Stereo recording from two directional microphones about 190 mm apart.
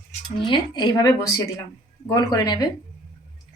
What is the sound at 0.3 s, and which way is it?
Speech, 25° left (ahead or behind).